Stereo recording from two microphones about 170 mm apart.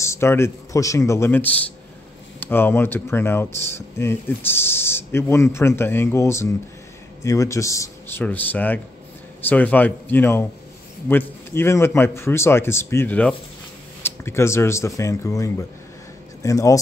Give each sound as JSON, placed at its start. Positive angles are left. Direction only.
{"t": 0.0, "sound": "speech", "side_deg": 15}